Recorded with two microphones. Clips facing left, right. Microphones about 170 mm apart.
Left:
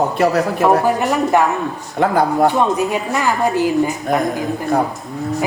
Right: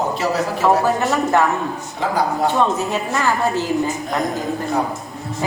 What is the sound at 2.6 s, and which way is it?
A woman's voice, 15° left (ahead or behind).